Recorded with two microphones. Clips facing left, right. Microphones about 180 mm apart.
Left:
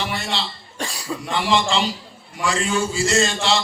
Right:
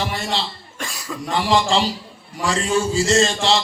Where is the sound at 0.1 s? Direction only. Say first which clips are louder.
Right 2 dB; 40° right (ahead or behind).